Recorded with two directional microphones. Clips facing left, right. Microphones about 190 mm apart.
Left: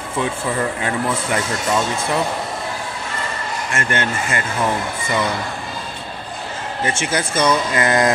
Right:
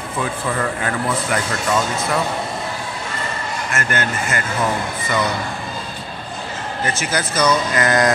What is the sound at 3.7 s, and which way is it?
Speech, 25° left (ahead or behind).